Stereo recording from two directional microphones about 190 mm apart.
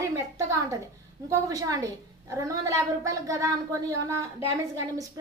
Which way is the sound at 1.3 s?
20° right (ahead or behind).